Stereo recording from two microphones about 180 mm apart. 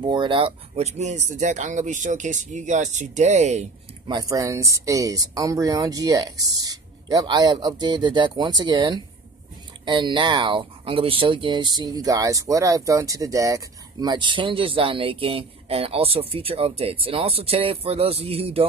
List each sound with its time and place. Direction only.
0.0 s speech: 25° right (ahead or behind)
4.1 s speech: 20° right (ahead or behind)